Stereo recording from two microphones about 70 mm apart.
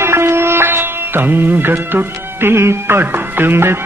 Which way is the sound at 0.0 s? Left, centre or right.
Right.